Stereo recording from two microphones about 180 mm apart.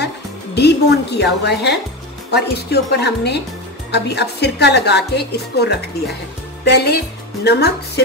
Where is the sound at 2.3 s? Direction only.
65° left (ahead or behind).